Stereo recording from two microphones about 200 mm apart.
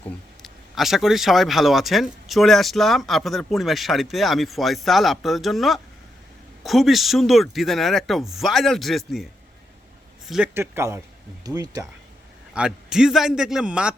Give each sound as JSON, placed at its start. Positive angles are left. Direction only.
{"t": 0.4, "sound": "speech", "side_deg": 0}
{"t": 12.5, "sound": "speech", "side_deg": -5}